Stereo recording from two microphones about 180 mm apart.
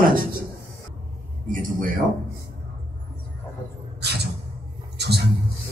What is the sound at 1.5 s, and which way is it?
Speech, 50° right (ahead or behind).